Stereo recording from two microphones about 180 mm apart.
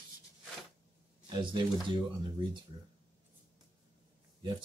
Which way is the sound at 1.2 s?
25° right (ahead or behind).